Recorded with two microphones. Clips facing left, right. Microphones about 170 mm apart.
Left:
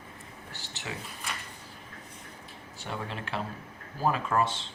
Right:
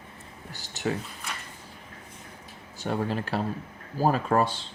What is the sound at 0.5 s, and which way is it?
Speech, 45° right (ahead or behind).